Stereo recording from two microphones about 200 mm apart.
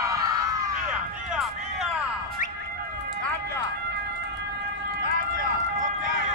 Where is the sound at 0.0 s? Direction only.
15° right (ahead or behind).